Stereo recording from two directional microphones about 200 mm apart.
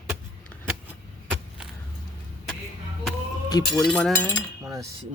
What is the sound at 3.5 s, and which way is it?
Speech, 20° left (ahead or behind).